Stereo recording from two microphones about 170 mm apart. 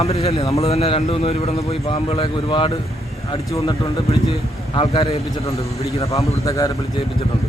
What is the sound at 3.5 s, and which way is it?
Speech, 20° left (ahead or behind).